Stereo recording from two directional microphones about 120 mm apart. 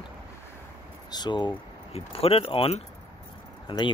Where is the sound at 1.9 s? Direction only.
55° left (ahead or behind).